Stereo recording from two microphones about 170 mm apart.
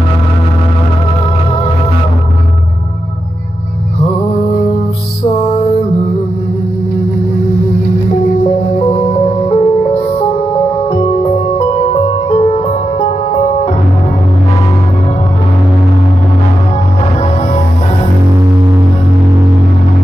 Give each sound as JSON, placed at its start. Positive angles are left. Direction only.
{"t": 5.4, "sound": "music", "side_deg": 35}
{"t": 8.5, "sound": "music", "side_deg": 35}
{"t": 11.5, "sound": "music", "side_deg": 35}